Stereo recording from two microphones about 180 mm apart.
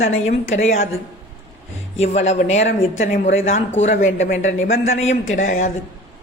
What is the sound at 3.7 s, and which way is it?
A woman's voice, 40° left (ahead or behind).